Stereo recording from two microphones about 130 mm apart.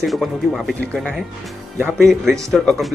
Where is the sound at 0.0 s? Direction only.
Centre (ahead or behind).